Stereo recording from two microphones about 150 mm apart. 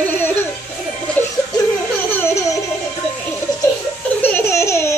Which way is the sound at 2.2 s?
20° left (ahead or behind).